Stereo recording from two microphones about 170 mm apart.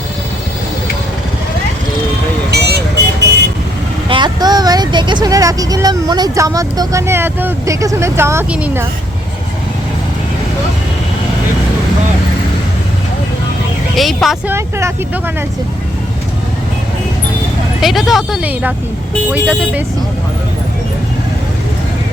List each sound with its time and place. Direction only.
2.5 s vehicle: 75° right (ahead or behind)
4.1 s speech: 25° right (ahead or behind)
13.9 s speech: centre (ahead or behind)
14.4 s speech: 15° right (ahead or behind)
17.7 s speech: centre (ahead or behind)